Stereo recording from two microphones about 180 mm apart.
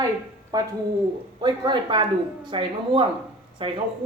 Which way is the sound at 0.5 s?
20° right (ahead or behind).